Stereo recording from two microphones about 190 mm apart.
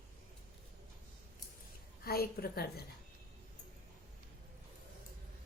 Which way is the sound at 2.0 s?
55° left (ahead or behind).